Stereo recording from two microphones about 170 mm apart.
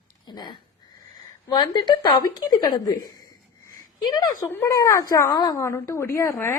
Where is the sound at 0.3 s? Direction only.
25° left (ahead or behind).